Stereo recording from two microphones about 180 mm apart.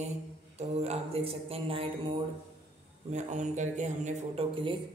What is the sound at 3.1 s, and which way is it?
Speech, 40° right (ahead or behind).